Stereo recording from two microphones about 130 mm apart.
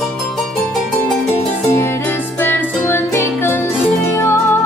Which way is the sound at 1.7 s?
20° left (ahead or behind).